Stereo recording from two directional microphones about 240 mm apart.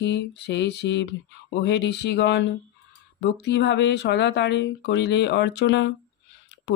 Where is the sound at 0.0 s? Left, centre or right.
Left.